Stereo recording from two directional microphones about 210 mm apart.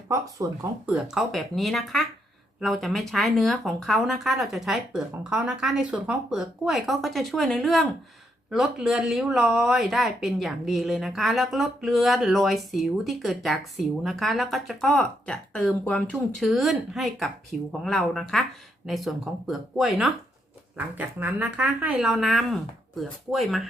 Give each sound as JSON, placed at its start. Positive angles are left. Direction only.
{"t": 0.1, "sound": "speech", "side_deg": -15}
{"t": 0.9, "sound": "speech", "side_deg": 0}